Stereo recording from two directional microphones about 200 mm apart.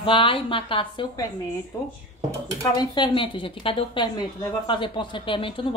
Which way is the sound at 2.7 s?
25° left (ahead or behind).